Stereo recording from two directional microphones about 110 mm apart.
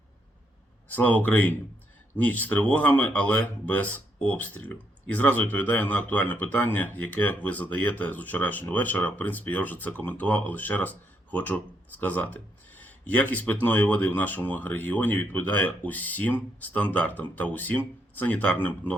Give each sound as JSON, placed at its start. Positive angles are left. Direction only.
{"t": 0.9, "sound": "speech", "side_deg": 15}